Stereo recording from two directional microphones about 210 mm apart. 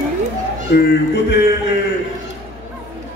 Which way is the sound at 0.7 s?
50° left (ahead or behind).